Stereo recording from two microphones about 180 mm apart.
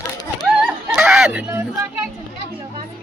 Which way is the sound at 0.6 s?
Centre (ahead or behind).